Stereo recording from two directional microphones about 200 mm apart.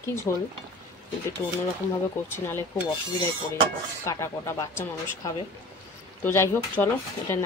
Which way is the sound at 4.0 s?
15° left (ahead or behind).